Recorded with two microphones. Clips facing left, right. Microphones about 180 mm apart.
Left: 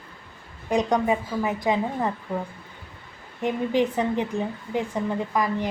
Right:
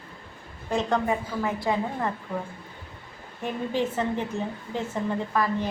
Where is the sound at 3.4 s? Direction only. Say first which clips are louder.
Left 5 dB; 15° left (ahead or behind).